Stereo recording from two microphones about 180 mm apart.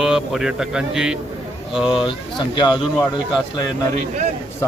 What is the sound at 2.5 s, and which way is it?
Speech, 25° left (ahead or behind).